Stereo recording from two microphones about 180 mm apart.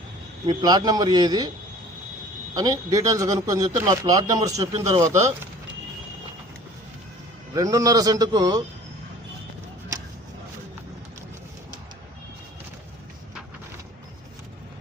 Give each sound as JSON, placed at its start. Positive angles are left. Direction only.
{"t": 0.4, "sound": "speech", "side_deg": -25}
{"t": 2.6, "sound": "speech", "side_deg": -20}
{"t": 7.5, "sound": "speech", "side_deg": -20}